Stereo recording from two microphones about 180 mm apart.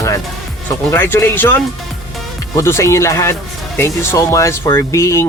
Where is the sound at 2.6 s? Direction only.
15° left (ahead or behind).